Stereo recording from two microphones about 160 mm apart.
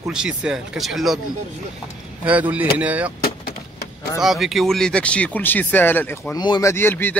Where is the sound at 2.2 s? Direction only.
10° right (ahead or behind).